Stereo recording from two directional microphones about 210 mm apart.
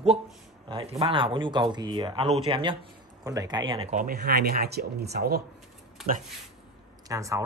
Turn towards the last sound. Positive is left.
turn(degrees=-15)  # may be behind; listen again after turning